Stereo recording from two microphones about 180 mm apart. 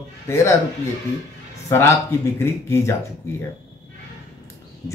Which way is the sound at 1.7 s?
15° left (ahead or behind).